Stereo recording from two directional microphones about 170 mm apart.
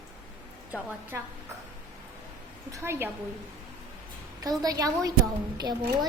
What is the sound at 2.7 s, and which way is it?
Speech, 15° right (ahead or behind).